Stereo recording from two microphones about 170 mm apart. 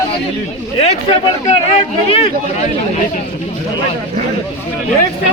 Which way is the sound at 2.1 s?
35° left (ahead or behind).